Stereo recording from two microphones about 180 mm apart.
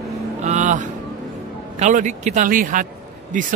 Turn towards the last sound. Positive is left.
turn(degrees=-45)  # may be behind; listen again after turning